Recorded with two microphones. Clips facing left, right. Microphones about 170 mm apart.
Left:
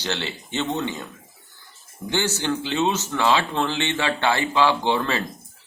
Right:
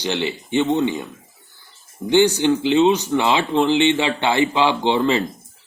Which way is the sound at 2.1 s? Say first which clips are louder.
Right 9 dB; 15° right (ahead or behind).